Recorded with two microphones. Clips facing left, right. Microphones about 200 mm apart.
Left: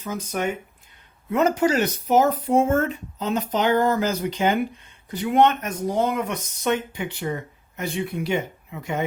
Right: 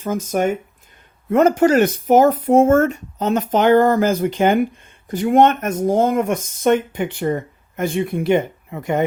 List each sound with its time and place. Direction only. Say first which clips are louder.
0.0 s speech: right 7 dB; 50° right (ahead or behind)